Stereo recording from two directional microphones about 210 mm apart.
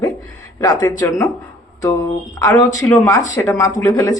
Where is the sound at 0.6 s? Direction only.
15° left (ahead or behind).